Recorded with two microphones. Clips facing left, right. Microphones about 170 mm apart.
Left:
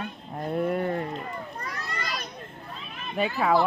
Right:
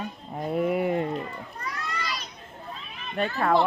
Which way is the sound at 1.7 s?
50° left (ahead or behind).